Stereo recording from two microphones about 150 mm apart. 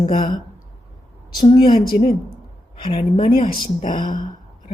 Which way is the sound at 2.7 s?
35° left (ahead or behind).